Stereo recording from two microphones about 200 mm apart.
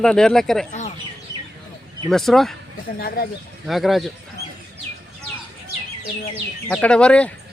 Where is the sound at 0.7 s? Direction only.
35° left (ahead or behind).